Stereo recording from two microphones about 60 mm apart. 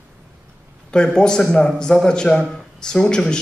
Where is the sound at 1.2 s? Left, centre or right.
Centre.